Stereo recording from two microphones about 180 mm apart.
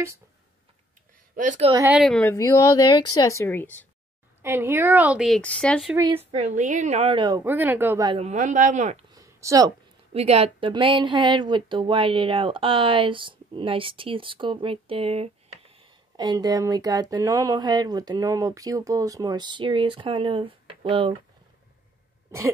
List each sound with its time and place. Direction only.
1.3 s a woman's voice: 45° right (ahead or behind)
1.9 s a woman's voice: centre (ahead or behind)
2.3 s a woman's voice: 15° left (ahead or behind)
4.4 s a woman's voice: 15° right (ahead or behind); by 5.9 s 5° left (ahead or behind)
6.3 s a woman's voice: 40° right (ahead or behind); by 7.4 s 25° right (ahead or behind)
7.4 s a woman's voice: 10° right (ahead or behind)
8.1 s a woman's voice: 35° right (ahead or behind)
9.1 s a sound: 20° right (ahead or behind)
10.1 s speech: 35° right (ahead or behind)
16.2 s speech: 20° right (ahead or behind)